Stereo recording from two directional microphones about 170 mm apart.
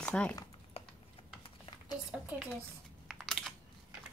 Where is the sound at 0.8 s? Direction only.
35° left (ahead or behind).